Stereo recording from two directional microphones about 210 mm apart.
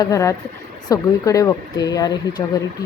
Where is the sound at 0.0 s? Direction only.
15° left (ahead or behind).